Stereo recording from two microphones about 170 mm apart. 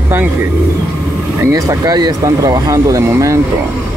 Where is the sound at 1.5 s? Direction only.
20° right (ahead or behind).